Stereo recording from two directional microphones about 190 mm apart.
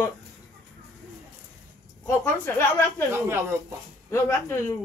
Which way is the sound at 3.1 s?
15° right (ahead or behind).